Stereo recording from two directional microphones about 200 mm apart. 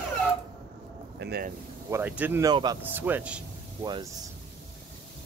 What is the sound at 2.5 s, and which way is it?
Speech, 20° right (ahead or behind).